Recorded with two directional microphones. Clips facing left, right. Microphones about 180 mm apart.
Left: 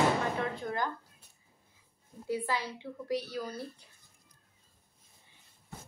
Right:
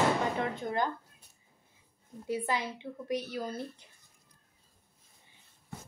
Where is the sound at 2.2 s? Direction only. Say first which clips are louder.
Right 1 dB; 20° right (ahead or behind).